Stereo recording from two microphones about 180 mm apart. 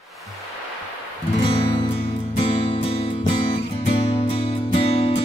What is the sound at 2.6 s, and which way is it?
Music, 35° left (ahead or behind).